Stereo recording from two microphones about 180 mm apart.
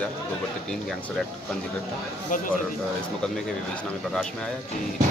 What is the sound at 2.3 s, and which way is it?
Speech, 45° left (ahead or behind).